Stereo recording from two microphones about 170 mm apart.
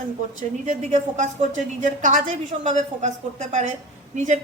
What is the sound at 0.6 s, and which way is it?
A woman's voice, 50° right (ahead or behind).